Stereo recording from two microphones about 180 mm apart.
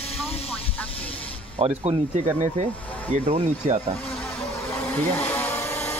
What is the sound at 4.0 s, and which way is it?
Vehicle, 5° left (ahead or behind).